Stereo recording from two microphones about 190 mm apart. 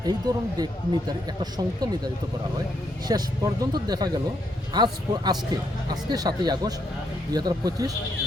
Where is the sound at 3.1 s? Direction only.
20° right (ahead or behind).